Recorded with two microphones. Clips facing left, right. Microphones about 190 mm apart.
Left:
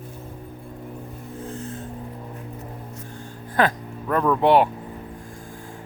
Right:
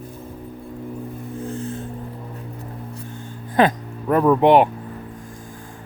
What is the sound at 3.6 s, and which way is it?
Speech, 15° right (ahead or behind).